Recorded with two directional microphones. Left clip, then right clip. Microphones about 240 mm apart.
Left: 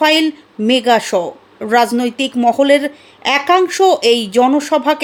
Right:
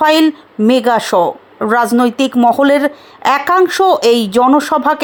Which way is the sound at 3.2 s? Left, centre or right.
Centre.